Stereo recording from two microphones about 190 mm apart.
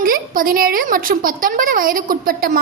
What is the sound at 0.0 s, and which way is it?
Speech, 50° right (ahead or behind).